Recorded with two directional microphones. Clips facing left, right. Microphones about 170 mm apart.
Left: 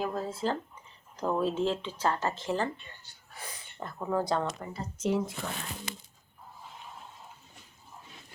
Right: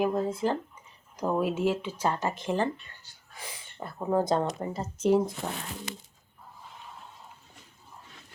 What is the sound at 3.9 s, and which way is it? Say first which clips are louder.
Speech: right 4 dB; 25° right (ahead or behind).